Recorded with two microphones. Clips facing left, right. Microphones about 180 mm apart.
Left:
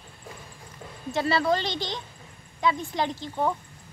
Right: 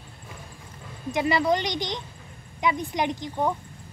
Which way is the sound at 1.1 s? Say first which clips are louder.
Right 1 dB; 15° right (ahead or behind).